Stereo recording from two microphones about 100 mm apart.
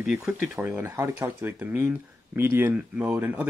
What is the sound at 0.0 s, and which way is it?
Speech, 10° right (ahead or behind).